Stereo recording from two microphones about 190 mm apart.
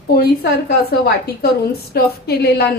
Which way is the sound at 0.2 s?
55° left (ahead or behind).